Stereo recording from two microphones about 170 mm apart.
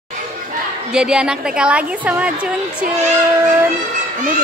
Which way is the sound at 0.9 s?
5° right (ahead or behind).